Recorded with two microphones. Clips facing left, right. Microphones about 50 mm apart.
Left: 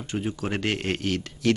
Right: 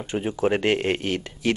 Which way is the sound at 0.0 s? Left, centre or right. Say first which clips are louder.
Right 6 dB; centre.